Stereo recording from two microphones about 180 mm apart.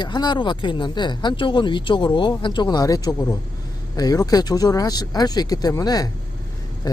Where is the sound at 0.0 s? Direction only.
25° left (ahead or behind).